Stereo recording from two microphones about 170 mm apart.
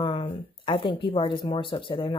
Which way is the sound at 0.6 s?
30° left (ahead or behind).